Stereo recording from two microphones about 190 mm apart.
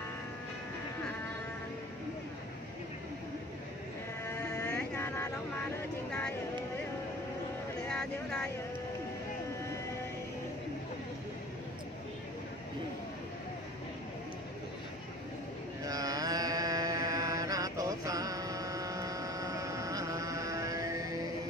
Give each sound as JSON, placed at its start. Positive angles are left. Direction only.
{"t": 4.4, "sound": "mantra", "side_deg": 15}
{"t": 4.7, "sound": "vehicle", "side_deg": 10}
{"t": 7.9, "sound": "a sound", "side_deg": 5}
{"t": 15.8, "sound": "mantra", "side_deg": -20}